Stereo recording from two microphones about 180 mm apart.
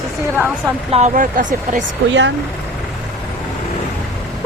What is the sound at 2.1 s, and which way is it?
Speech, 85° right.